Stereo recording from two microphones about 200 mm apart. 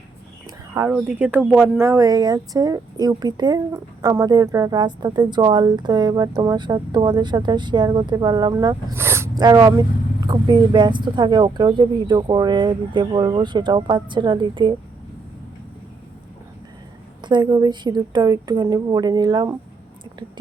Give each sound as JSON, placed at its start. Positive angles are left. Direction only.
{"t": 0.7, "sound": "speech", "side_deg": -10}
{"t": 17.2, "sound": "speech", "side_deg": -20}